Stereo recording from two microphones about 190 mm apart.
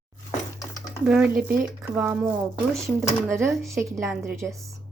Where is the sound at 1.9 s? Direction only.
10° right (ahead or behind).